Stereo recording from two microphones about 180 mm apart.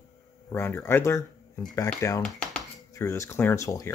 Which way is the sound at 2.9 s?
15° left (ahead or behind).